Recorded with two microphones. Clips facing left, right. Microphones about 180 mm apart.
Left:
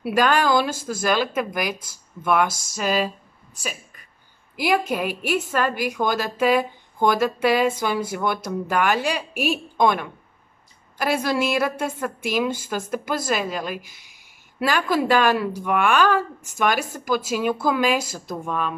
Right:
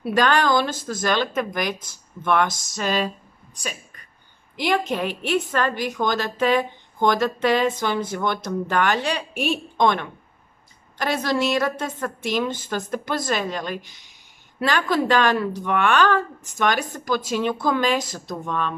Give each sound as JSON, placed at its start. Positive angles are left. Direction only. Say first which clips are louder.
{"t": 0.0, "sound": "a woman's voice", "louder": "even", "side_deg": 5}
{"t": 4.6, "sound": "a woman's voice", "louder": "left 1 dB", "side_deg": 10}